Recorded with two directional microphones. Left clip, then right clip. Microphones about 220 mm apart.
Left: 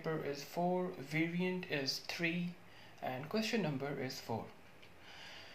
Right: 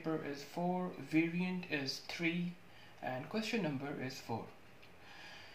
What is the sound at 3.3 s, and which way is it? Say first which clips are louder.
Speech: left 2 dB; 30° left (ahead or behind).